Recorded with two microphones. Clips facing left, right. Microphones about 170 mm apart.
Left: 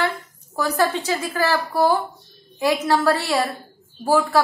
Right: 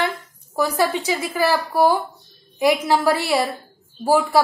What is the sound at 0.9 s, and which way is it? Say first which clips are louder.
A woman's voice: right 1 dB; 15° right (ahead or behind).